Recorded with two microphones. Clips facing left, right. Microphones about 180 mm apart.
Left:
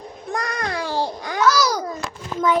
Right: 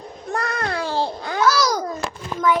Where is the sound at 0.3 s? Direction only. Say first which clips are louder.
Right 1 dB; 15° left (ahead or behind).